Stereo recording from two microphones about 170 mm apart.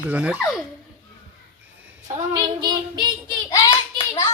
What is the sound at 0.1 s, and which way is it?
Speech, 10° right (ahead or behind).